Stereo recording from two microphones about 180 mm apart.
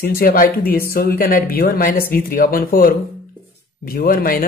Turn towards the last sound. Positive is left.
turn(degrees=55)  # may be behind; listen again after turning